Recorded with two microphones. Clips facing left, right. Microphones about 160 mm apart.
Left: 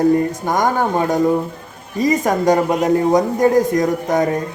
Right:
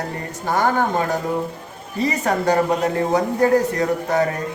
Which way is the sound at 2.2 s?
15° left (ahead or behind).